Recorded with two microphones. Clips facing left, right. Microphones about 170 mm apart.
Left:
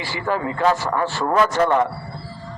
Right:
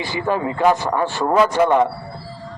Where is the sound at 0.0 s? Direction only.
20° right (ahead or behind).